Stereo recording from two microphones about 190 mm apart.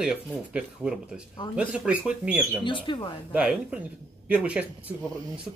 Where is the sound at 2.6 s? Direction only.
25° left (ahead or behind).